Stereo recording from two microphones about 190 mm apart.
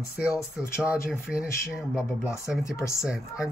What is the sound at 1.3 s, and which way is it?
Speech, 15° left (ahead or behind).